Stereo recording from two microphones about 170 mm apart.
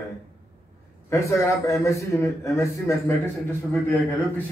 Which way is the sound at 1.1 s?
20° left (ahead or behind).